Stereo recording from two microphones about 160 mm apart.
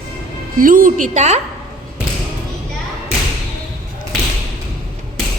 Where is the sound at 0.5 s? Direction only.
60° right (ahead or behind).